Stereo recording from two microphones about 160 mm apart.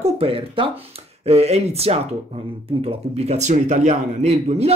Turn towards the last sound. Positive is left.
turn(degrees=-40)  # may be behind; listen again after turning